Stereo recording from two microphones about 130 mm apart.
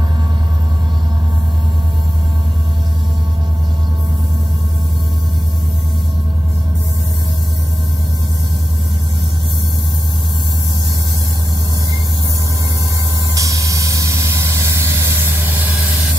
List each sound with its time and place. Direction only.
13.3 s vehicle: 25° right (ahead or behind)